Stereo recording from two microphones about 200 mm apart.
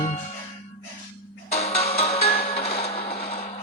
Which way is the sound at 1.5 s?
30° left (ahead or behind).